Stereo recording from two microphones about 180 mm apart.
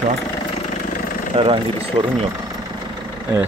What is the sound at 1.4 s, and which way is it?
Speech, 30° right (ahead or behind).